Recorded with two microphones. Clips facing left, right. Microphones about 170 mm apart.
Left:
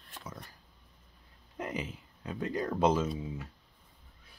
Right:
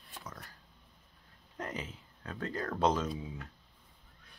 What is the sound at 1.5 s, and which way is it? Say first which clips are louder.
Speech: left 3 dB; 10° left (ahead or behind).